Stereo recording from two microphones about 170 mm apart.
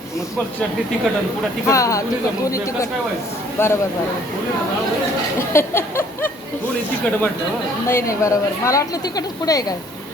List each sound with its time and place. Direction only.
1.6 s speech: 20° left (ahead or behind)
3.6 s a woman's voice: 15° left (ahead or behind)
5.4 s a woman's voice: 15° left (ahead or behind)
7.9 s a woman's voice: 15° left (ahead or behind)